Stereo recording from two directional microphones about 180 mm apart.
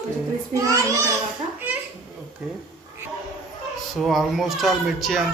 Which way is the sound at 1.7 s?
10° right (ahead or behind).